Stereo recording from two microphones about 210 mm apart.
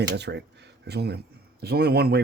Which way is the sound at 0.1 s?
55° right (ahead or behind).